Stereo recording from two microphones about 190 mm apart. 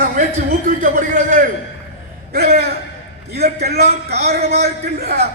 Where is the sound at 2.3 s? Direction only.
55° right (ahead or behind).